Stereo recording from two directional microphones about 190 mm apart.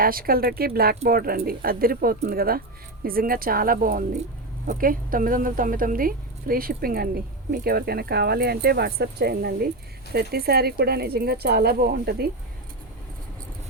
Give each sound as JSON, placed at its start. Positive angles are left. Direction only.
{"t": 0.0, "sound": "speech", "side_deg": -50}